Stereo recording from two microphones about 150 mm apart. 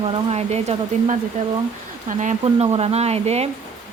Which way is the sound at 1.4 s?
55° right (ahead or behind).